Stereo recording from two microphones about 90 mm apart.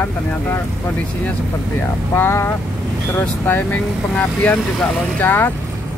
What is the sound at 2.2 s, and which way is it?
Speech, 25° left (ahead or behind).